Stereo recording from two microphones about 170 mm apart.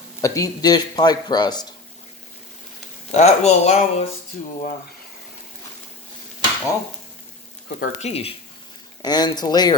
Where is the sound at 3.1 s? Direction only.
40° left (ahead or behind).